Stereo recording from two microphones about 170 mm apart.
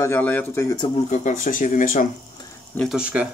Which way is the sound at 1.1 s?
45° left (ahead or behind).